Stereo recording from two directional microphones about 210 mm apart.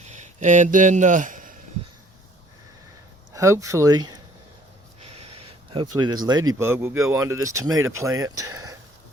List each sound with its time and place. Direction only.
0.1 s a man's voice: 35° right (ahead or behind)
3.3 s speech: 15° right (ahead or behind)
4.9 s gasp: 30° right (ahead or behind)
5.7 s speech: 20° right (ahead or behind)